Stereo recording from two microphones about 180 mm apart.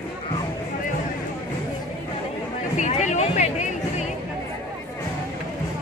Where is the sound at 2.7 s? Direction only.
40° left (ahead or behind).